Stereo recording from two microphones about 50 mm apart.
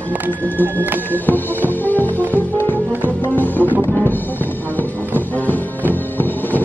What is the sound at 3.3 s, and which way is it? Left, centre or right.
Music, left.